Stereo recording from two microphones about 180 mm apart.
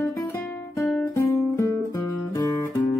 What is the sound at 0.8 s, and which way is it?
Music, centre (ahead or behind).